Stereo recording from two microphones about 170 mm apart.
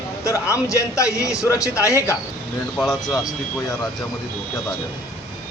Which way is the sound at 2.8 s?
Centre (ahead or behind).